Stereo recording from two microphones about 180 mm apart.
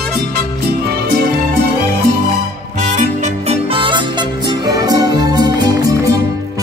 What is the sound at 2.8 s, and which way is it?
Music, 40° right (ahead or behind).